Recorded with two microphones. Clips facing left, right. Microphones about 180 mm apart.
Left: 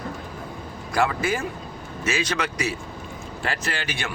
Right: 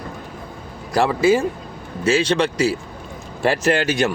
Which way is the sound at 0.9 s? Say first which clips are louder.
Right 7 dB; 30° right (ahead or behind).